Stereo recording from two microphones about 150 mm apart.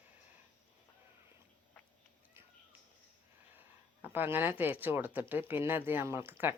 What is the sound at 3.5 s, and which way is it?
Speech, 15° right (ahead or behind).